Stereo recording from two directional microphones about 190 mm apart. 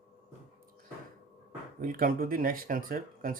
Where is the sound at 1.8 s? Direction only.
50° right (ahead or behind).